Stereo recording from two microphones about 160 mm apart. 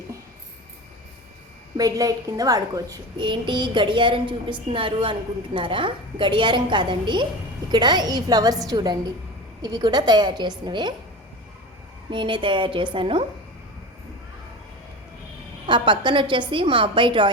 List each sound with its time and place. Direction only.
1.7 s a woman's voice: 20° right (ahead or behind)
12.1 s a woman's voice: 30° right (ahead or behind)
15.6 s a woman's voice: 30° right (ahead or behind)